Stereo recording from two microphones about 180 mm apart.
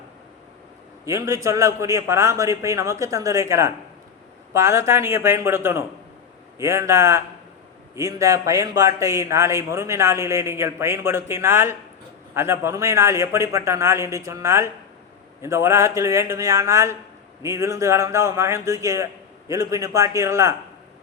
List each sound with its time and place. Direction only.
1.0 s a man's voice: 15° right (ahead or behind)